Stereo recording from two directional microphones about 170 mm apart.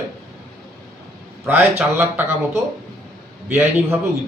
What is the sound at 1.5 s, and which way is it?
Speech, 10° right (ahead or behind).